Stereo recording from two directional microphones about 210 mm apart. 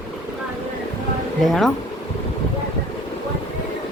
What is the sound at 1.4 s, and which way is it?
Speech, centre (ahead or behind).